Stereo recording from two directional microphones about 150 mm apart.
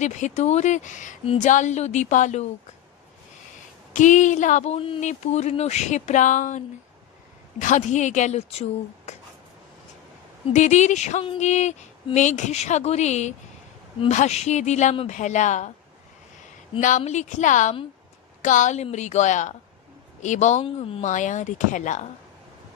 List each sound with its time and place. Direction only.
0.0 s a woman's voice: 50° left (ahead or behind)
1.2 s speech: 40° left (ahead or behind)
1.5 s a woman's voice: 50° left (ahead or behind)
3.9 s speech: 55° left (ahead or behind)
4.7 s speech: 35° left (ahead or behind)
5.0 s a woman's voice: 50° left (ahead or behind)
7.6 s a woman's voice: 55° left (ahead or behind)
10.5 s a woman's voice: 50° left (ahead or behind)
16.8 s a woman's voice: 55° left (ahead or behind)
20.6 s speech: 40° left (ahead or behind)
21.0 s a woman's voice: 55° left (ahead or behind)